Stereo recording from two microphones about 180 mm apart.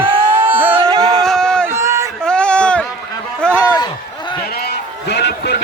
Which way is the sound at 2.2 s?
5° left (ahead or behind).